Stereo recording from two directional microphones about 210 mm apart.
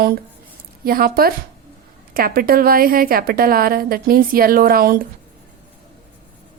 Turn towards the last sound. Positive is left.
turn(degrees=-45)  # may be behind; listen again after turning